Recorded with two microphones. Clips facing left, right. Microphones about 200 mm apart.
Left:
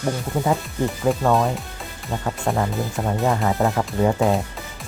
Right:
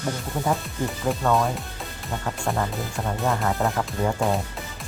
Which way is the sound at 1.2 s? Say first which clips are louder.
Left 3 dB; 20° left (ahead or behind).